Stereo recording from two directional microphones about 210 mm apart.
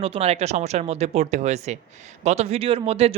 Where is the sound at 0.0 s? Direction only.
30° right (ahead or behind).